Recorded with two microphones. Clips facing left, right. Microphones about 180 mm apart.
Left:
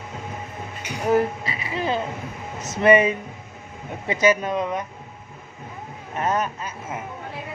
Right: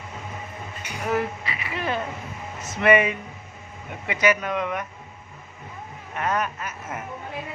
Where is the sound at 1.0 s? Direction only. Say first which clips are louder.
Left 5 dB; 35° left (ahead or behind).